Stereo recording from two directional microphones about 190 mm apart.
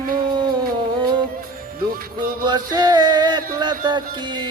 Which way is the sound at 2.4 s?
20° right (ahead or behind).